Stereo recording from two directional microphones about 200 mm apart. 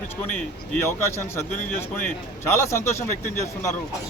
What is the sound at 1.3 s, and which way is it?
A man's voice, 10° left (ahead or behind).